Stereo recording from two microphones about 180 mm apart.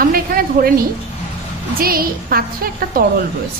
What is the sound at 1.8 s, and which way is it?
A woman's voice, 55° right (ahead or behind).